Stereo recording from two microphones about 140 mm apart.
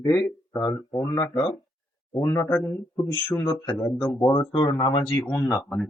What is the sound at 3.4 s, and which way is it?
Speech, 20° left (ahead or behind).